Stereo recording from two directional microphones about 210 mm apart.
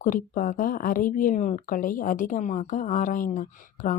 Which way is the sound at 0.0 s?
40° left (ahead or behind).